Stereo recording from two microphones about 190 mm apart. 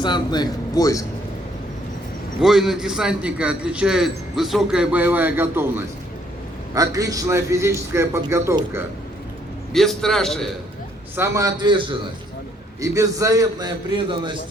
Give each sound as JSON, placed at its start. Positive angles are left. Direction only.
{"t": 0.0, "sound": "speech", "side_deg": 25}
{"t": 2.4, "sound": "a man's voice", "side_deg": 0}
{"t": 9.7, "sound": "a man's voice", "side_deg": 0}
{"t": 11.2, "sound": "a man's voice", "side_deg": -20}
{"t": 12.8, "sound": "a man's voice", "side_deg": -15}